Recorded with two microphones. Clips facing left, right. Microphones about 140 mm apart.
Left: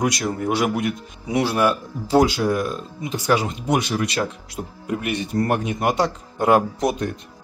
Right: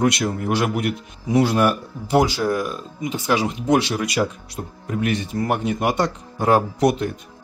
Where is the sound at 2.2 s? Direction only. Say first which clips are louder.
Left 1 dB; 15° left (ahead or behind).